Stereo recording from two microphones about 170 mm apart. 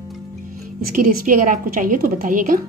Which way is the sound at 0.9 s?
55° right (ahead or behind).